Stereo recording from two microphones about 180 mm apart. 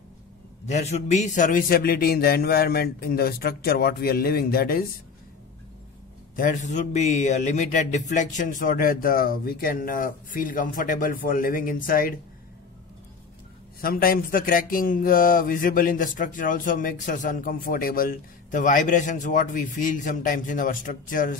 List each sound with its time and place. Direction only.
0.7 s a man's voice: 40° left (ahead or behind); by 4.8 s 55° left (ahead or behind)
6.3 s speech: 45° left (ahead or behind)
13.7 s speech: 55° left (ahead or behind)